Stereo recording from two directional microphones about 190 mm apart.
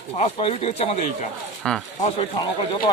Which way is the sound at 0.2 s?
30° left (ahead or behind).